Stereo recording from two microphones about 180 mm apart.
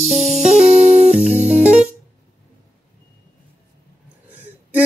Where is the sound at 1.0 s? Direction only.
35° right (ahead or behind).